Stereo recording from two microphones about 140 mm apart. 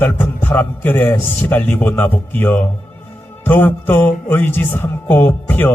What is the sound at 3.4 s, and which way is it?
Speech, 15° left (ahead or behind).